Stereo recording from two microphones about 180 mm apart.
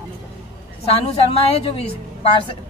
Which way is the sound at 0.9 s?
35° left (ahead or behind).